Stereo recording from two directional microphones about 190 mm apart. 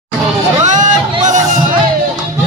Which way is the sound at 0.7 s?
40° right (ahead or behind).